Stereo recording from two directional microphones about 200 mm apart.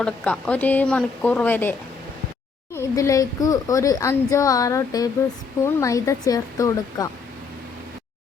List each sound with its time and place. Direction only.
0.0 s speech: 5° left (ahead or behind)
2.7 s speech: 15° left (ahead or behind)